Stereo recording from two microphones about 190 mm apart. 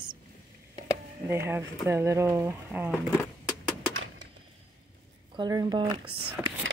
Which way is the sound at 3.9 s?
90° right.